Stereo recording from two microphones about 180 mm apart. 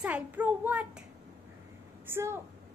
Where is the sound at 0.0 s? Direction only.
10° right (ahead or behind).